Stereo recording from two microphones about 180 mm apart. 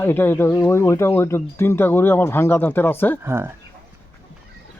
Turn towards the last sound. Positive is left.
turn(degrees=-15)  # may be behind; listen again after turning